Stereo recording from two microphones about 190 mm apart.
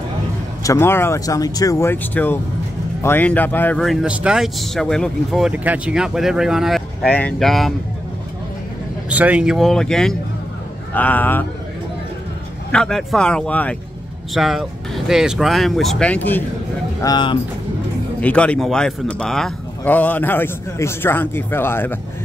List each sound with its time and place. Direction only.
0.7 s speech: 10° left (ahead or behind)
9.1 s speech: 5° right (ahead or behind); by 11.4 s 10° left (ahead or behind)
12.7 s speech: 5° left (ahead or behind)
17.0 s speech: 25° left (ahead or behind)
18.2 s speech: 5° left (ahead or behind)